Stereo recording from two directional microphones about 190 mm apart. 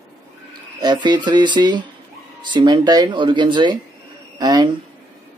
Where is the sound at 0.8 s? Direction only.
20° right (ahead or behind).